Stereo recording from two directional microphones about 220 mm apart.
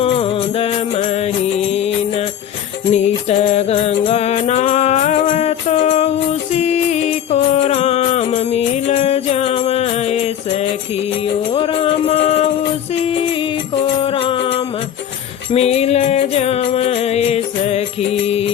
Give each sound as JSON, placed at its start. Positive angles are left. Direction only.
{"t": 0.0, "sound": "music", "side_deg": 25}
{"t": 14.0, "sound": "music", "side_deg": 25}